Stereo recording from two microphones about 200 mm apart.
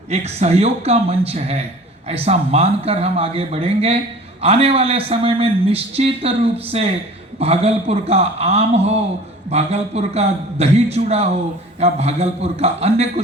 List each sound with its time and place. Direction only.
0.1 s a man's voice: 30° right (ahead or behind)